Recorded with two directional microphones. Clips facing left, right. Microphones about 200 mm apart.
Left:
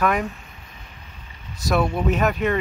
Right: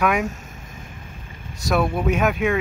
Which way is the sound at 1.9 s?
Centre (ahead or behind).